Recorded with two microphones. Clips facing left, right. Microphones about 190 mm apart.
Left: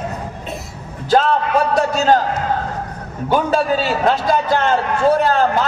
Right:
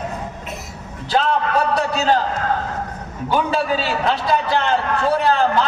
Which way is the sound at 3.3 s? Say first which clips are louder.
Left 3 dB; 45° left (ahead or behind).